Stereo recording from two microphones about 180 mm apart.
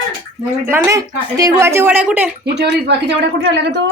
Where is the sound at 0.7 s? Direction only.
15° right (ahead or behind).